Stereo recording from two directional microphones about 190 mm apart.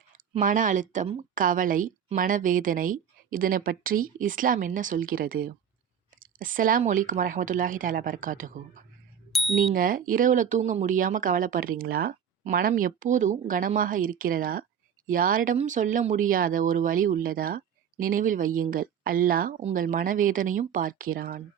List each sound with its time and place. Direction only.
0.3 s speech: 45° right (ahead or behind)
9.3 s bicycle bell: centre (ahead or behind)
9.7 s speech: 45° right (ahead or behind)